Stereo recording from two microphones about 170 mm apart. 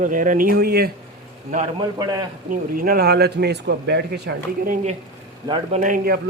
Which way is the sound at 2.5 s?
55° right (ahead or behind).